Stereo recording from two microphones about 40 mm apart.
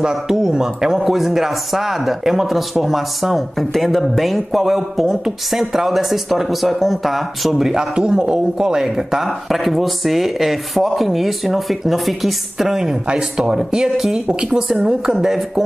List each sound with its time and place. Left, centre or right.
0.0 s a man's voice: centre